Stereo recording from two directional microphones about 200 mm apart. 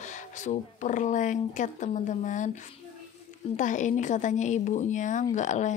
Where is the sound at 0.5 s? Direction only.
40° left (ahead or behind).